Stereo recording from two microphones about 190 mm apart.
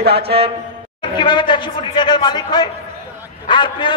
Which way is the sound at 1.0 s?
25° left (ahead or behind).